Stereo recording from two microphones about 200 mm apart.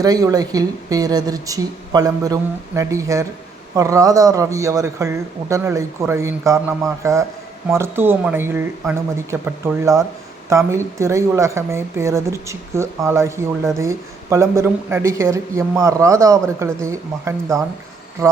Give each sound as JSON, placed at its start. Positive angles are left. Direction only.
{"t": 0.0, "sound": "speech", "side_deg": -15}